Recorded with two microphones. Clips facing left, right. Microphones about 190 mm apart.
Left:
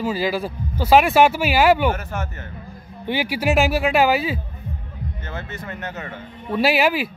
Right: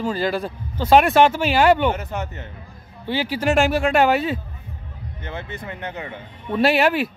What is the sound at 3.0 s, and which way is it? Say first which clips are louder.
Speech: even; 15° left (ahead or behind).